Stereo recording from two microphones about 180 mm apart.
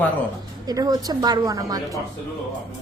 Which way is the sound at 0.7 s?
20° right (ahead or behind).